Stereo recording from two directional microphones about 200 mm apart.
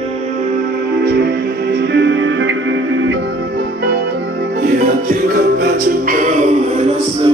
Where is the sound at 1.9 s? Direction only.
65° right (ahead or behind).